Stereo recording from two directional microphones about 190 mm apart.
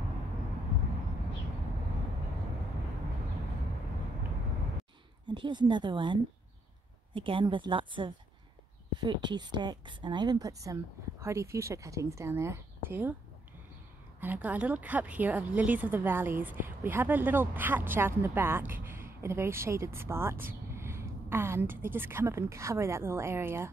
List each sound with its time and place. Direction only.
5.2 s a woman's voice: 25° right (ahead or behind)
7.2 s a woman's voice: 25° right (ahead or behind); by 13.1 s 10° right (ahead or behind)
14.2 s a woman's voice: 10° right (ahead or behind)